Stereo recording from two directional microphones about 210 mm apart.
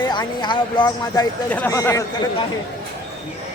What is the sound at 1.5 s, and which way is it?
Speech, 10° left (ahead or behind).